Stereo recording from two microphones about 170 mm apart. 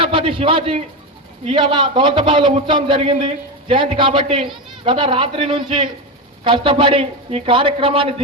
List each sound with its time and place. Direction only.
0.0 s a man's voice: 30° right (ahead or behind)
4.4 s a sound: centre (ahead or behind)
4.8 s a man's voice: 30° right (ahead or behind)